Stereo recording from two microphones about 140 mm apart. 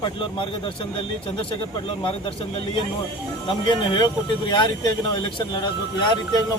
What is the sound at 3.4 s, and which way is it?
Speech, 35° left (ahead or behind).